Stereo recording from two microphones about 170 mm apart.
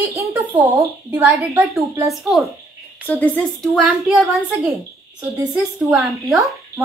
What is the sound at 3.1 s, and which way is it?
Speech, 10° left (ahead or behind).